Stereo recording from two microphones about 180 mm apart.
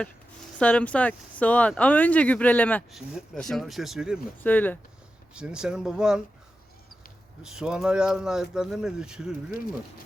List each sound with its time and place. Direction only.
0.6 s speech: 5° left (ahead or behind)
4.4 s speech: 10° left (ahead or behind)
5.3 s speech: 5° right (ahead or behind)
7.4 s speech: 5° right (ahead or behind)